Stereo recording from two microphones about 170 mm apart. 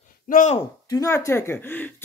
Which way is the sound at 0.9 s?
20° left (ahead or behind).